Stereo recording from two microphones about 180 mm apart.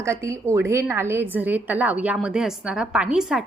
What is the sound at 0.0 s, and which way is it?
A woman's voice, 15° right (ahead or behind).